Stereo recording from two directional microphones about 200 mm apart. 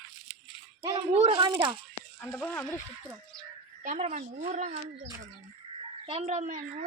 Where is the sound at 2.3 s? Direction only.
5° left (ahead or behind).